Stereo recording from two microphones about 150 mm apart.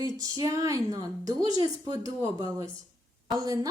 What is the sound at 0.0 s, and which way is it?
A woman's voice, 25° right (ahead or behind).